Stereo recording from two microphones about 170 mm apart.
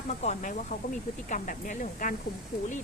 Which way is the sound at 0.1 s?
40° left (ahead or behind).